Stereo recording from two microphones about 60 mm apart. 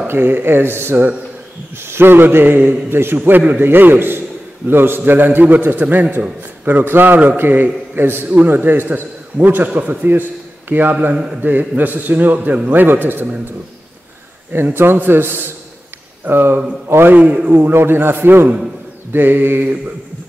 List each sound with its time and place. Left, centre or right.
0.1 s a man's voice: right
14.5 s a man's voice: right
17.5 s a man's voice: right